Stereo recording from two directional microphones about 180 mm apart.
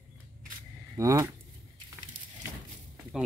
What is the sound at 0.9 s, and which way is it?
Speech, 15° right (ahead or behind).